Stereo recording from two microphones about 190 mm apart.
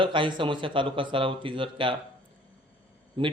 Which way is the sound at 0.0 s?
25° right (ahead or behind).